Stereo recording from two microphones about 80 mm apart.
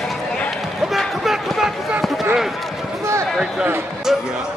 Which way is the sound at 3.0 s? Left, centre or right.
Right.